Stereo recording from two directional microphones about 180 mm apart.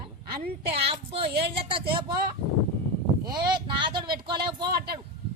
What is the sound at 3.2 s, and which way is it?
Speech, 25° right (ahead or behind).